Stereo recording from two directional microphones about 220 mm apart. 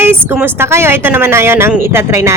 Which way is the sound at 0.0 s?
10° right (ahead or behind).